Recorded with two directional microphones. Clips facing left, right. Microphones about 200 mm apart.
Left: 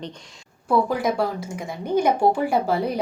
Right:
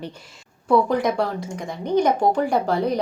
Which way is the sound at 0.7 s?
5° left (ahead or behind).